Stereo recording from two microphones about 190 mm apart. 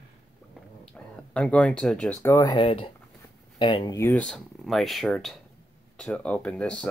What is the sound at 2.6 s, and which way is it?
Speech, 25° left (ahead or behind).